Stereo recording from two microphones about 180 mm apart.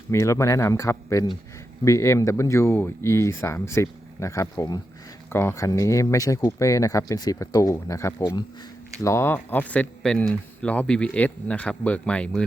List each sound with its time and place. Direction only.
0.1 s speech: 15° left (ahead or behind)